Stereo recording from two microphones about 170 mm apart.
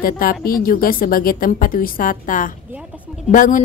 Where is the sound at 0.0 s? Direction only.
60° left (ahead or behind).